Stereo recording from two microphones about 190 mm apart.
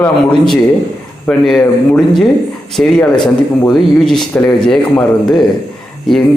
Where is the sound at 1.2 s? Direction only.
5° left (ahead or behind).